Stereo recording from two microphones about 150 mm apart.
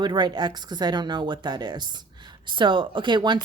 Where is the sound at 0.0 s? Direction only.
30° right (ahead or behind).